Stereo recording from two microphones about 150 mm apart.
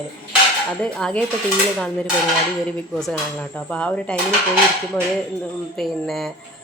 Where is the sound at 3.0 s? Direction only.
5° left (ahead or behind).